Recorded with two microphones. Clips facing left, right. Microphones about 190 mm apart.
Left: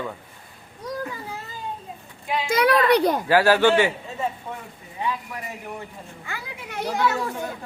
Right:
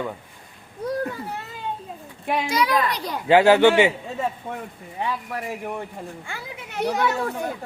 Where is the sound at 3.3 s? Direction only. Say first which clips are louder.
Right 4 dB; 20° right (ahead or behind).